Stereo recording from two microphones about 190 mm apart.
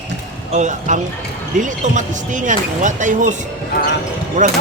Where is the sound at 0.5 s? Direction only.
40° right (ahead or behind).